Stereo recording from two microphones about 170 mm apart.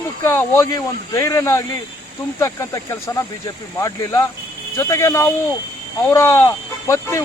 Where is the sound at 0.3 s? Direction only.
15° left (ahead or behind).